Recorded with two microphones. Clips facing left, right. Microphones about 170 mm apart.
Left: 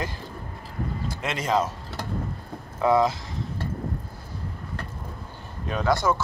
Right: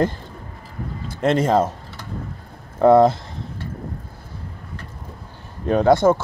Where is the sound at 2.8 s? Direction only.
55° right (ahead or behind).